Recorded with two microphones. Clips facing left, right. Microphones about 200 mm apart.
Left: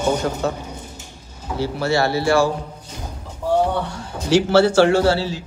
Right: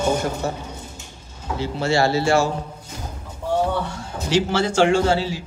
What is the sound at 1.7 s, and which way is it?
Speech, 25° right (ahead or behind).